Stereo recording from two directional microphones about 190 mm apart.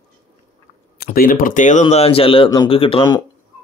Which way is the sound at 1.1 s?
45° left (ahead or behind).